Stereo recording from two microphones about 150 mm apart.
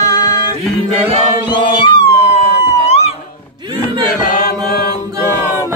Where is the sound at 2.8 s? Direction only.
45° left (ahead or behind).